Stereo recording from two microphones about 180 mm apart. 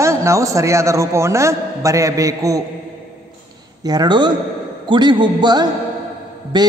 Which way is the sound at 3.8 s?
20° right (ahead or behind).